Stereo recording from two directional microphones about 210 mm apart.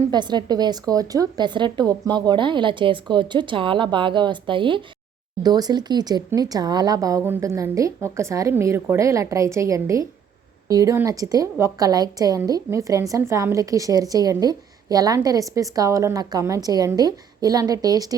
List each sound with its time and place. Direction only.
0.1 s a woman's voice: 20° right (ahead or behind)